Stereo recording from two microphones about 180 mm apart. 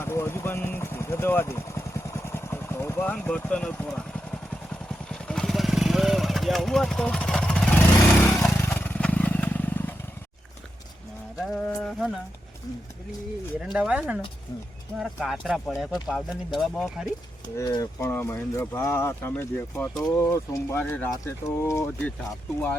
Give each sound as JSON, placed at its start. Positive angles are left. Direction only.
{"t": 0.0, "sound": "vehicle", "side_deg": 15}
{"t": 8.2, "sound": "motorcycle", "side_deg": 5}
{"t": 8.7, "sound": "vehicle", "side_deg": 10}
{"t": 11.3, "sound": "a sound", "side_deg": 5}
{"t": 13.7, "sound": "speech", "side_deg": -5}
{"t": 17.4, "sound": "speech", "side_deg": 20}